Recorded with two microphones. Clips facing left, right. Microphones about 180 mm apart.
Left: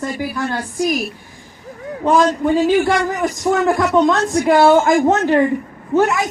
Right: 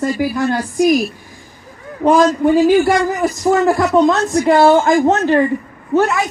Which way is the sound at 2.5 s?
5° right (ahead or behind).